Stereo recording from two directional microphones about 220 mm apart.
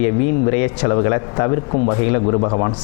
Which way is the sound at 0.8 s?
25° left (ahead or behind).